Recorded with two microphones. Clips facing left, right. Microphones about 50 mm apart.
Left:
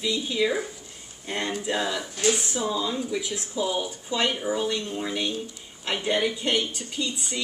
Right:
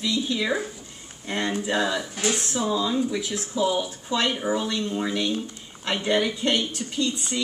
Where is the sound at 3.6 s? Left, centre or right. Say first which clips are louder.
Right 3 dB; centre.